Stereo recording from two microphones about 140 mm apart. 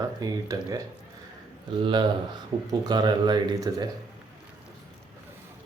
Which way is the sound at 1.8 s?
35° right (ahead or behind).